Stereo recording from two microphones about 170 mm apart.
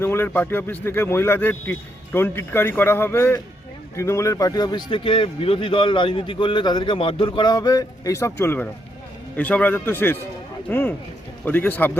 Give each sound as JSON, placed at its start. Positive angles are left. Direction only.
{"t": 0.0, "sound": "a man's voice", "side_deg": 15}